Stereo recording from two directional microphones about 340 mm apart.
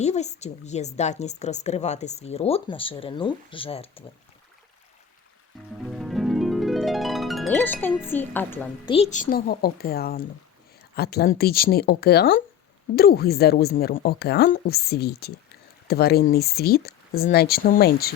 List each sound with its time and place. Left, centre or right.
0.0 s a woman's voice: centre
5.9 s harp: centre
9.0 s a woman's voice: left